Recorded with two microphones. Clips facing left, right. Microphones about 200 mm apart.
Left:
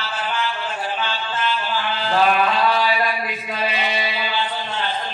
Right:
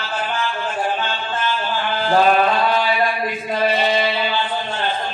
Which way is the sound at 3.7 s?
50° right (ahead or behind).